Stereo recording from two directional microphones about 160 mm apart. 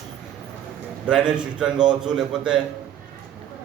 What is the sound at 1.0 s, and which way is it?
A man's voice, 5° right (ahead or behind).